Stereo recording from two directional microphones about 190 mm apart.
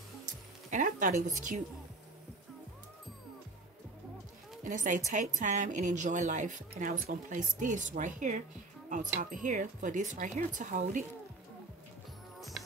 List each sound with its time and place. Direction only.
0.7 s speech: 40° right (ahead or behind)
4.6 s a woman's voice: 40° right (ahead or behind)
12.4 s music: centre (ahead or behind)